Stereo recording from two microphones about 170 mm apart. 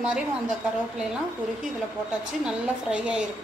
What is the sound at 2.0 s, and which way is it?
A woman's voice, 5° right (ahead or behind).